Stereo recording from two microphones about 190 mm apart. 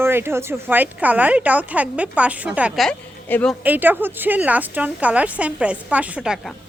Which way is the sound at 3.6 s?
10° right (ahead or behind).